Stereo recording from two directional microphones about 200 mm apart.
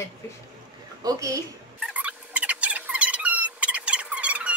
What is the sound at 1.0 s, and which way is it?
Speech, 15° right (ahead or behind).